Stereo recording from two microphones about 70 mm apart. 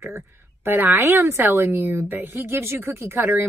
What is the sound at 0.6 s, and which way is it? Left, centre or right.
A woman's voice, right.